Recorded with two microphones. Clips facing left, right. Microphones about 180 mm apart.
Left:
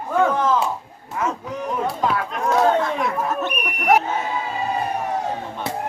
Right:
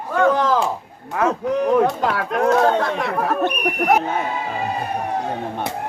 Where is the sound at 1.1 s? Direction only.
65° right (ahead or behind).